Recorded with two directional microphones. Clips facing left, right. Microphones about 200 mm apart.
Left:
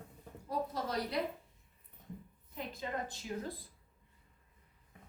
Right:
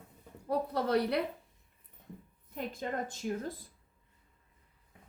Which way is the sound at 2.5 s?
50° right (ahead or behind).